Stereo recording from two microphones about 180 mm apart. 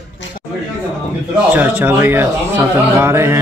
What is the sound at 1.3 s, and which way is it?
A man's voice, 10° right (ahead or behind).